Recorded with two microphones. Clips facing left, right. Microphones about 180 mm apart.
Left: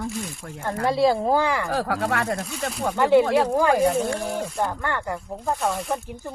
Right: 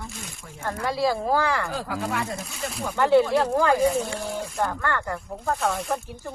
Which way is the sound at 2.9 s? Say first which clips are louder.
Left 1 dB; 15° left (ahead or behind).